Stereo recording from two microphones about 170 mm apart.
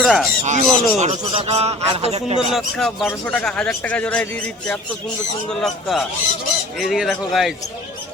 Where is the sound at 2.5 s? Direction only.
Centre (ahead or behind).